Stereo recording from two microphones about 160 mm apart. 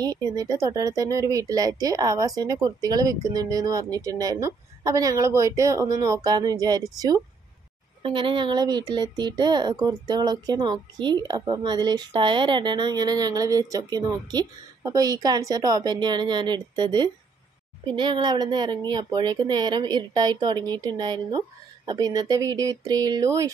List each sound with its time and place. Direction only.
0.0 s speech: 25° right (ahead or behind)
8.0 s speech: 30° right (ahead or behind)